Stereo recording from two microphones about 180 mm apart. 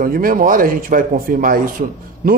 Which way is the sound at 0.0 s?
50° right (ahead or behind).